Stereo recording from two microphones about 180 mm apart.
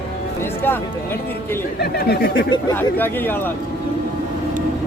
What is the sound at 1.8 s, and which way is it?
Speech, 60° left (ahead or behind).